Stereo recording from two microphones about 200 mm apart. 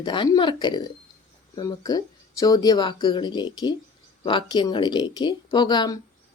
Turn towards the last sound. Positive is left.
turn(degrees=20)  # may be behind; listen again after turning